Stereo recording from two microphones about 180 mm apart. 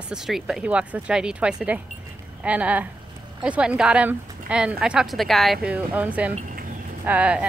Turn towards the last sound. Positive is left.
turn(degrees=-5)  # may be behind; listen again after turning